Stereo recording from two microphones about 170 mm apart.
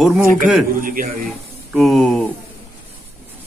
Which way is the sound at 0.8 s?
55° right (ahead or behind).